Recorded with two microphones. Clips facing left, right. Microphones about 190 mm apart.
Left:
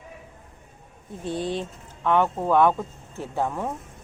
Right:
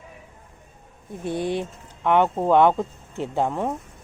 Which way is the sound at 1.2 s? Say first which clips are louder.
Right 2 dB; 15° right (ahead or behind).